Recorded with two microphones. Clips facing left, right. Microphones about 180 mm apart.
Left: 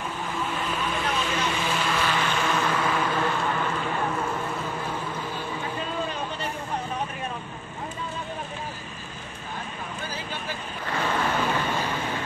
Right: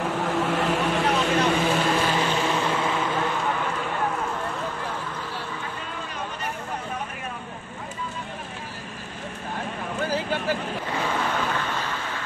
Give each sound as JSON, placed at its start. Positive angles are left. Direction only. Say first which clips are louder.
{"t": 0.0, "sound": "vehicle", "louder": "right 6 dB", "side_deg": -75}
{"t": 1.4, "sound": "vehicle", "louder": "right 5 dB", "side_deg": -45}
{"t": 10.1, "sound": "a sound", "louder": "right 9 dB", "side_deg": -80}
{"t": 10.9, "sound": "waves", "louder": "left 2 dB", "side_deg": -10}
{"t": 11.2, "sound": "vehicle", "louder": "left 1 dB", "side_deg": 10}